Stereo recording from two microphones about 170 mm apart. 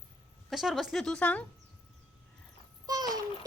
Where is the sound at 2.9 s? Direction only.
20° right (ahead or behind).